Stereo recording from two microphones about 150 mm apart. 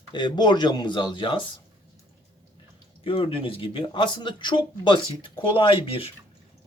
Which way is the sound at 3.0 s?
35° left (ahead or behind).